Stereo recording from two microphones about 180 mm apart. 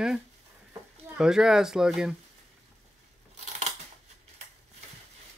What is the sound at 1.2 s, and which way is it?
Speech, 5° right (ahead or behind).